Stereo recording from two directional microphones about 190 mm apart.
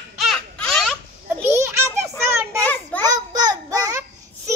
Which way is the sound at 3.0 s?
20° right (ahead or behind).